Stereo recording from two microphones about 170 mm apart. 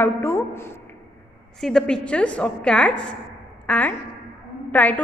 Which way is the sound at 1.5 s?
5° left (ahead or behind).